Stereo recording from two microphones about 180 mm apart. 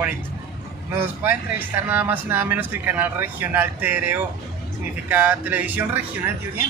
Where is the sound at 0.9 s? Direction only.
10° right (ahead or behind).